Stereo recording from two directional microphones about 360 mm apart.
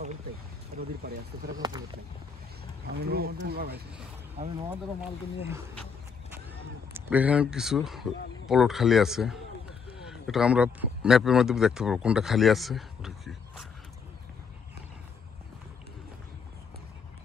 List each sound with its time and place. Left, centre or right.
0.7 s speech: right
1.6 s speech: centre
2.9 s speech: right
4.4 s speech: centre
6.9 s speech: centre